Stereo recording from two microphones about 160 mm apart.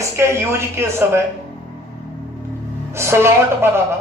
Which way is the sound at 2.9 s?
15° right (ahead or behind).